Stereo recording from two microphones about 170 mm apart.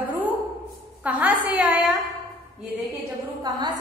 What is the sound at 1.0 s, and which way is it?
Speech, 10° right (ahead or behind).